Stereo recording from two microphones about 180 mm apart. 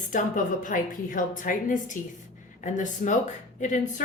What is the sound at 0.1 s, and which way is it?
Speech, 45° left (ahead or behind).